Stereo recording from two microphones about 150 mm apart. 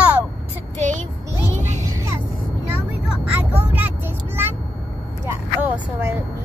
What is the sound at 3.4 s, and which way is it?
Speech, 10° right (ahead or behind).